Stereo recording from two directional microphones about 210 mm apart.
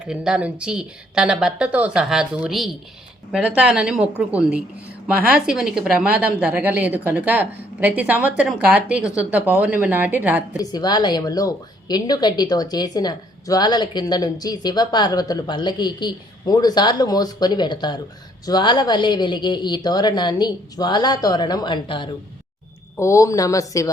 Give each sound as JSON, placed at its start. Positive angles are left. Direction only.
{"t": 0.1, "sound": "a woman's voice", "side_deg": -5}
{"t": 10.6, "sound": "a woman's voice", "side_deg": 20}